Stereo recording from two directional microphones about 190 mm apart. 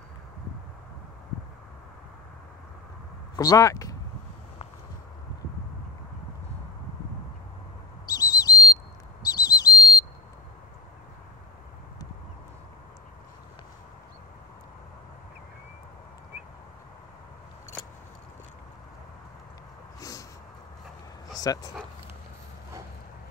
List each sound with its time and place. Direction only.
3.3 s speech: 20° left (ahead or behind)
8.1 s whistle: 20° left (ahead or behind)
20.0 s a sound: 20° left (ahead or behind)
21.5 s speech: 20° left (ahead or behind)